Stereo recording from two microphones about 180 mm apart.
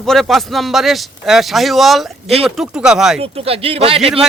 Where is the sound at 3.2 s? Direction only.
35° right (ahead or behind).